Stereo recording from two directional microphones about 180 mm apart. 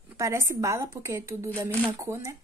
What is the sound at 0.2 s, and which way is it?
A woman's voice, 15° right (ahead or behind).